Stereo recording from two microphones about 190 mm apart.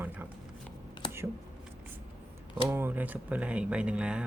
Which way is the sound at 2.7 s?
10° right (ahead or behind).